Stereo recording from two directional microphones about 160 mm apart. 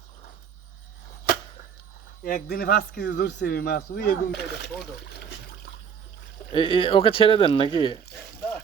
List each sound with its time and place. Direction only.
2.2 s a man's voice: 70° left (ahead or behind); by 4.7 s 85° left
6.5 s speech: 35° left (ahead or behind)